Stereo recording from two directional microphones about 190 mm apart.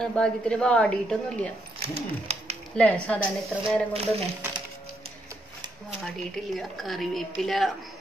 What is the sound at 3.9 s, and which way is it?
Speech, 30° right (ahead or behind).